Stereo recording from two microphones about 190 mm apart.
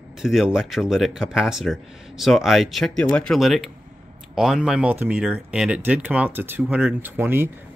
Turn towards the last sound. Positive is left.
turn(degrees=-10)  # may be behind; listen again after turning